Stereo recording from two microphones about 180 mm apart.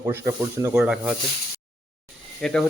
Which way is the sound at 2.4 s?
5° left (ahead or behind).